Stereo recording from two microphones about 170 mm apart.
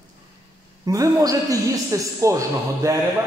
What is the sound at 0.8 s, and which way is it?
A man's voice, 20° right (ahead or behind).